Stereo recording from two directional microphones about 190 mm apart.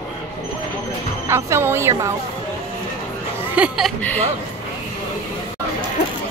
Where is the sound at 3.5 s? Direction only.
5° right (ahead or behind).